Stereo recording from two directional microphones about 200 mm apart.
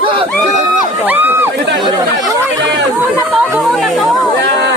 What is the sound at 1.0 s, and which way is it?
Speech, 10° right (ahead or behind).